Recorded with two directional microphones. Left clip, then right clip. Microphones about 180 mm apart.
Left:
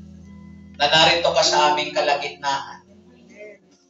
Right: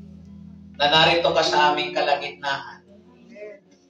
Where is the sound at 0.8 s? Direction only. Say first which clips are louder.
Left 1 dB; 25° right (ahead or behind).